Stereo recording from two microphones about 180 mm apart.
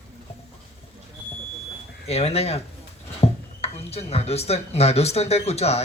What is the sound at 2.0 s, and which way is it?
Speech, 35° left (ahead or behind).